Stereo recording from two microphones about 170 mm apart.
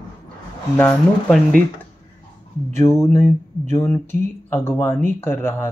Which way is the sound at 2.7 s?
15° left (ahead or behind).